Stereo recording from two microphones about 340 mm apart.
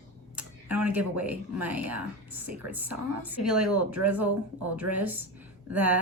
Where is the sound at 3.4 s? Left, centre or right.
Right.